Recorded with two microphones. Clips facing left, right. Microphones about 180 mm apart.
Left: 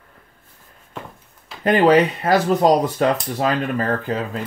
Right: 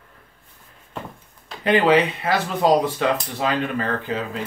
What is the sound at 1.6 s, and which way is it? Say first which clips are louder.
Speech: left 3 dB; 40° left (ahead or behind).